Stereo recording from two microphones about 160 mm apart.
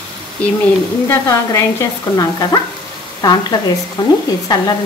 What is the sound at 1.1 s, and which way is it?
Sizzle, 20° left (ahead or behind).